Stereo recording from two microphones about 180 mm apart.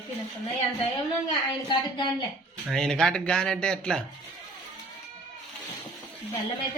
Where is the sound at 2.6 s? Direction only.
Centre (ahead or behind).